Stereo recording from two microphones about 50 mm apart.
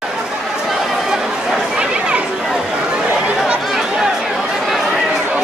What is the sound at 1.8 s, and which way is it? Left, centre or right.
Chatter, right.